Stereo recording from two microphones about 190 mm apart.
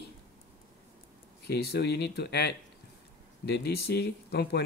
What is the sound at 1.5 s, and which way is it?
Speech, 55° left (ahead or behind).